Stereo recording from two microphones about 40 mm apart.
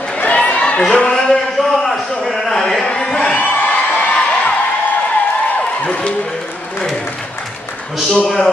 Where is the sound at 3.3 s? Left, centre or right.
Left.